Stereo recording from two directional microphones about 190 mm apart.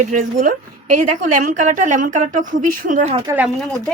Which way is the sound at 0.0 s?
40° right (ahead or behind).